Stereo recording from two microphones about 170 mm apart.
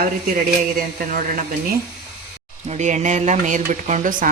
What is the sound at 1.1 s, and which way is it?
Speech, 55° right (ahead or behind).